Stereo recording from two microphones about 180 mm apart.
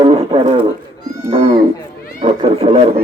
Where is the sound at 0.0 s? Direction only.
30° right (ahead or behind).